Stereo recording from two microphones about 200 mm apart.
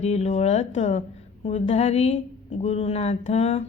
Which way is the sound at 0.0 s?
35° left (ahead or behind).